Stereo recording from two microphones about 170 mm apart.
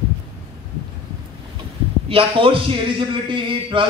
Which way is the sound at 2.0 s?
30° right (ahead or behind).